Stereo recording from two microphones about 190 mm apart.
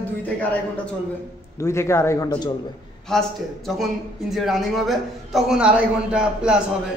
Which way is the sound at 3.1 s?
Centre (ahead or behind).